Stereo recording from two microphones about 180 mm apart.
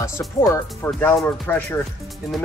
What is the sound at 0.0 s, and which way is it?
Speech, 20° left (ahead or behind).